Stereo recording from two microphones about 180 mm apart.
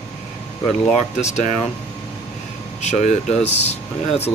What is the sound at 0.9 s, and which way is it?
Speech, 40° left (ahead or behind).